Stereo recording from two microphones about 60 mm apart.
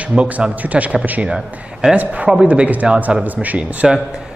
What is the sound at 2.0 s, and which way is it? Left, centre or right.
Speech, right.